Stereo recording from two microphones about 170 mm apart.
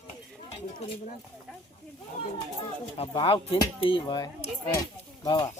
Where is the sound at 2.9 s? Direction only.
30° left (ahead or behind).